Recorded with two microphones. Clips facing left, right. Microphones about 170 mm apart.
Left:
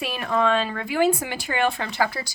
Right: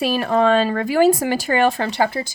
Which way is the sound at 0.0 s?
35° right (ahead or behind).